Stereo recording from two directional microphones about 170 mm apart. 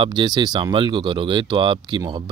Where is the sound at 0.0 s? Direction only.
25° right (ahead or behind).